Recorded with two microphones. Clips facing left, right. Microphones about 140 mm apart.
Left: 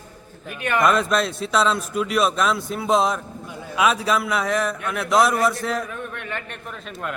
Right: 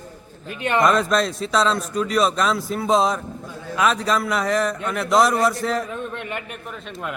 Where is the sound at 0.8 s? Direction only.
Centre (ahead or behind).